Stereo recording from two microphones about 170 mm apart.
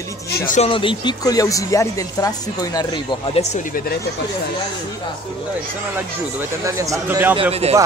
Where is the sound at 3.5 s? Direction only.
50° left (ahead or behind).